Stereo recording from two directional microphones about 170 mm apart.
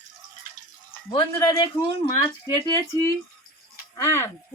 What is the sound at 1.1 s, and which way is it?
A man's voice, 25° left (ahead or behind).